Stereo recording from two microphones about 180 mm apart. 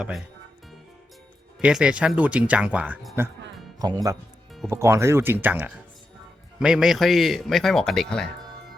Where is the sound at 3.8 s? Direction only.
20° right (ahead or behind); by 8.2 s 5° left (ahead or behind).